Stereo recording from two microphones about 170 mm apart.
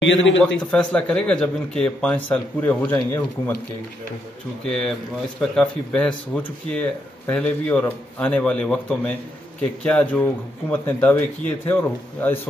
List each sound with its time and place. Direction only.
0.0 s a man's voice: 90° left
0.7 s a man's voice: 5° left (ahead or behind)
4.6 s a man's voice: 5° left (ahead or behind)